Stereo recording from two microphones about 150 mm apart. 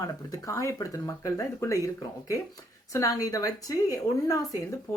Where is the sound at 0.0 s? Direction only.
20° left (ahead or behind).